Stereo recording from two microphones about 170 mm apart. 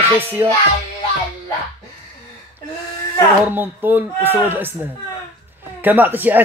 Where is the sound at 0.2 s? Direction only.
10° right (ahead or behind).